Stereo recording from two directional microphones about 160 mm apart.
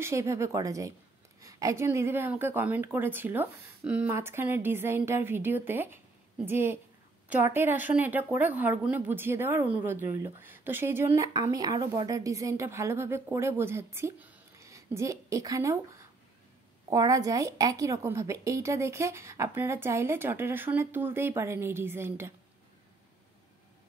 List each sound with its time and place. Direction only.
0.0 s a woman's voice: 20° right (ahead or behind)